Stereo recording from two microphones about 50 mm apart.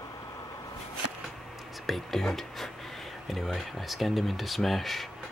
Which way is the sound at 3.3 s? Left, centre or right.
Centre.